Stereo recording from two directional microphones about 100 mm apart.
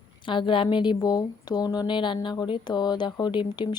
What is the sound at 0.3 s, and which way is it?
A woman's voice, 55° left (ahead or behind).